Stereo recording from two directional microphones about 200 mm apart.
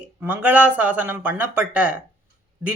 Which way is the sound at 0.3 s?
10° right (ahead or behind).